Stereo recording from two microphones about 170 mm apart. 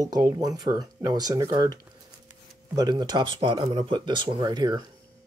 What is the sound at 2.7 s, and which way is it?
Speech, 25° right (ahead or behind).